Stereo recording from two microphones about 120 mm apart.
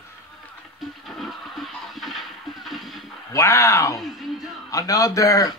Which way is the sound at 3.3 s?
20° left (ahead or behind).